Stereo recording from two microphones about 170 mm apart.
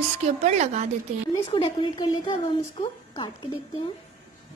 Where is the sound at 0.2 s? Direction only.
45° right (ahead or behind).